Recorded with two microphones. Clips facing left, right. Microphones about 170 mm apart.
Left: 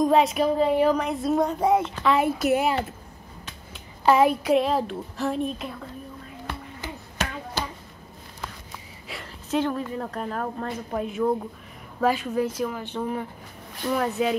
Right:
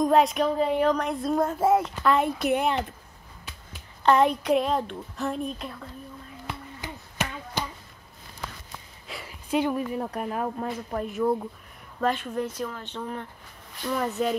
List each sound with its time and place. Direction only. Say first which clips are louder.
0.0 s speech: left 1 dB; centre (ahead or behind)
4.0 s speech: left 2 dB; 5° left (ahead or behind)
6.4 s finger snapping: left 2 dB; 15° right (ahead or behind)
9.2 s a woman's voice: even; 10° right (ahead or behind)